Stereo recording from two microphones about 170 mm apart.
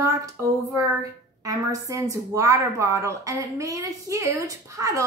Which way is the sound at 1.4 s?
20° right (ahead or behind).